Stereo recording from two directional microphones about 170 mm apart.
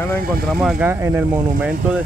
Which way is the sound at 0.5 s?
5° right (ahead or behind).